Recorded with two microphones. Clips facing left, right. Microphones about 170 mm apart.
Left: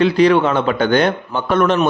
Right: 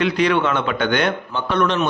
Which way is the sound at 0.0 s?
35° left (ahead or behind).